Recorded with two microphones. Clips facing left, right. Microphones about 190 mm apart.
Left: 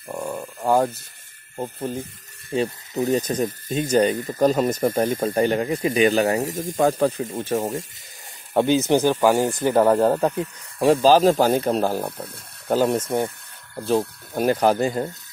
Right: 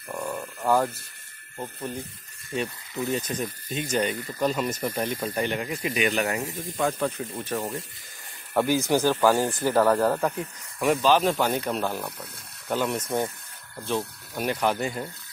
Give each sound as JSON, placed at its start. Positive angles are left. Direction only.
{"t": 0.1, "sound": "a sound", "side_deg": 15}
{"t": 2.5, "sound": "speech", "side_deg": 35}
{"t": 5.7, "sound": "speech", "side_deg": 30}
{"t": 7.5, "sound": "speech", "side_deg": 40}
{"t": 8.5, "sound": "speech", "side_deg": 20}